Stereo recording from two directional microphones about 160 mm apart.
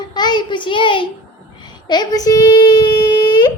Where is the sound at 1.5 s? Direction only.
25° left (ahead or behind).